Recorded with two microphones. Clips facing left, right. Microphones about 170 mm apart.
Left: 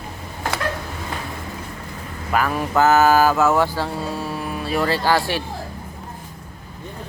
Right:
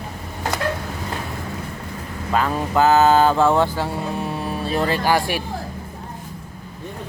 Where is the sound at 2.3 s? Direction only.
25° right (ahead or behind).